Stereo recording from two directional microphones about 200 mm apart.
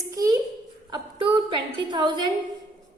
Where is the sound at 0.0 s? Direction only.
15° right (ahead or behind).